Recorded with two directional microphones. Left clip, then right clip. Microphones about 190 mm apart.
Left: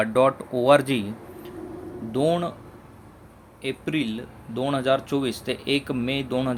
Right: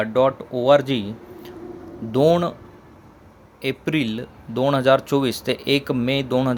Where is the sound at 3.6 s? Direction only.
25° right (ahead or behind).